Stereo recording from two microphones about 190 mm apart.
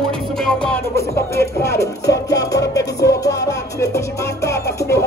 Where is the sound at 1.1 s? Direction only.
15° left (ahead or behind).